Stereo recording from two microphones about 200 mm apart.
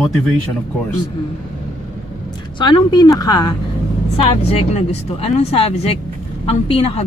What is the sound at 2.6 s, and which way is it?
Speech, 20° left (ahead or behind).